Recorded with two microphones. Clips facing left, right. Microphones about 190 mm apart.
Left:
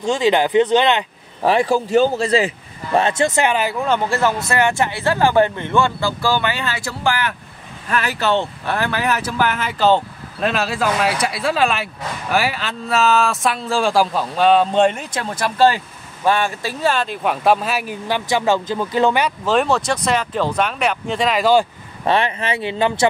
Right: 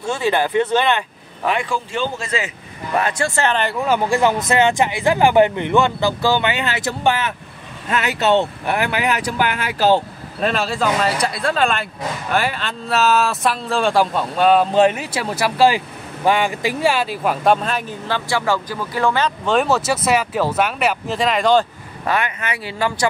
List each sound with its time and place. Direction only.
0.0 s speech: 15° left (ahead or behind)
1.4 s speech: 35° left (ahead or behind)
3.0 s speech: 25° left (ahead or behind)
3.8 s speech: 10° right (ahead or behind)
10.5 s speech: 5° left (ahead or behind)
19.4 s speech: centre (ahead or behind)
22.0 s speech: 30° left (ahead or behind)